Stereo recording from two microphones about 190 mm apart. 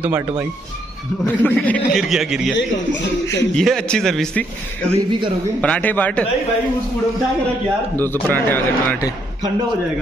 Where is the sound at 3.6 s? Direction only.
5° left (ahead or behind).